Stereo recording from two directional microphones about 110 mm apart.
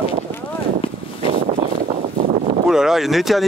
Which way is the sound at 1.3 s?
65° right (ahead or behind).